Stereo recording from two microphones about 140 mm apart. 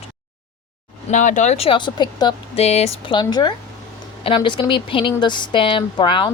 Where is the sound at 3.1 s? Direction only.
30° left (ahead or behind).